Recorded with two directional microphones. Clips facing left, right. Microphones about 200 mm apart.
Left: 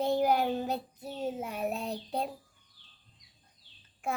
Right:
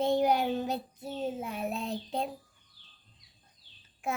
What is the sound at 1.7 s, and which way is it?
Child singing, 40° left (ahead or behind).